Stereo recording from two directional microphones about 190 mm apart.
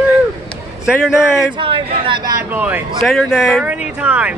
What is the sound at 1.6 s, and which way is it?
Speech, 25° right (ahead or behind).